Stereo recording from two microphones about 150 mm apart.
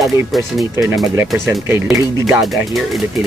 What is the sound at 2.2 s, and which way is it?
Speech, centre (ahead or behind).